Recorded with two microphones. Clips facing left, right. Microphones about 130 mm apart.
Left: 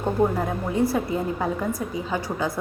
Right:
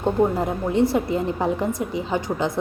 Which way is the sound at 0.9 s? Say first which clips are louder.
Right 3 dB; 25° right (ahead or behind).